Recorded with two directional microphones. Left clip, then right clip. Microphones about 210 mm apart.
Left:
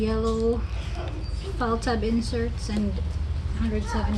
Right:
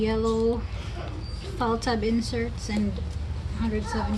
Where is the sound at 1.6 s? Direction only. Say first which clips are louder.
Even; 20° right (ahead or behind).